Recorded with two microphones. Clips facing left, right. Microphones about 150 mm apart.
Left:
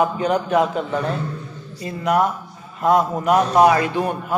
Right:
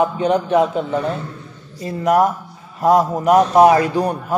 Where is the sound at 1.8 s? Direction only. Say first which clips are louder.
Right 4 dB; 40° right (ahead or behind).